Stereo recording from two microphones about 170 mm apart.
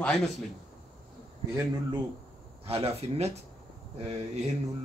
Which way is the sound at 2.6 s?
35° right (ahead or behind).